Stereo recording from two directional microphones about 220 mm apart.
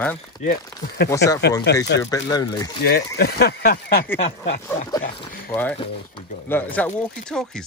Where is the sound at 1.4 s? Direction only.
50° left (ahead or behind).